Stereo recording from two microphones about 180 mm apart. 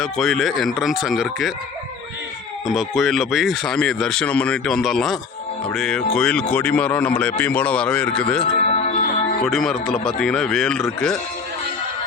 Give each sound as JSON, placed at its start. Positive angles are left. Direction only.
{"t": 0.0, "sound": "speech", "side_deg": 0}
{"t": 2.6, "sound": "speech", "side_deg": 0}
{"t": 8.5, "sound": "music", "side_deg": 40}
{"t": 9.4, "sound": "speech", "side_deg": 0}